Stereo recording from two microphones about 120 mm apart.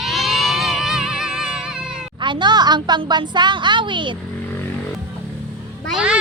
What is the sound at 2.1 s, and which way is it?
A woman's voice, 40° right (ahead or behind).